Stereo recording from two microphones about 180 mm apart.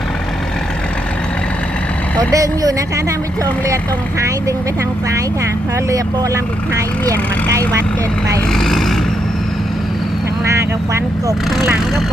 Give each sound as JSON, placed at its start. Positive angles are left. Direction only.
{"t": 2.3, "sound": "speech", "side_deg": -20}
{"t": 8.5, "sound": "speech", "side_deg": 0}